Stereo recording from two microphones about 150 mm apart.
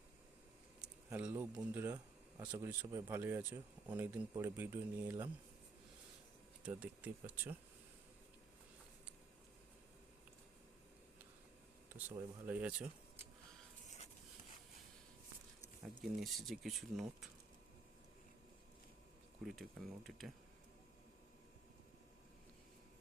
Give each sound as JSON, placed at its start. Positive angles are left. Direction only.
{"t": 0.8, "sound": "speech", "side_deg": -10}
{"t": 6.6, "sound": "speech", "side_deg": -10}
{"t": 11.9, "sound": "speech", "side_deg": -10}
{"t": 13.8, "sound": "a sound", "side_deg": 50}
{"t": 15.8, "sound": "speech", "side_deg": 0}
{"t": 19.4, "sound": "speech", "side_deg": 0}